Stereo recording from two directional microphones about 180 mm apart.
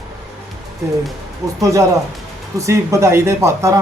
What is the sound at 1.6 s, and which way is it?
Speech, 20° right (ahead or behind).